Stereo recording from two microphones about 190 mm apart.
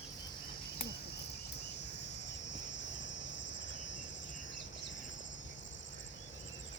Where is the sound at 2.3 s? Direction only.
70° left (ahead or behind).